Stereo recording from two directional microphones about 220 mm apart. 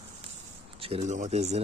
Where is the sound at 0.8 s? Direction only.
25° right (ahead or behind).